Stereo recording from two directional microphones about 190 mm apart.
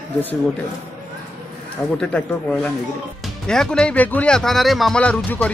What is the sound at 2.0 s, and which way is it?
Speech, 5° left (ahead or behind).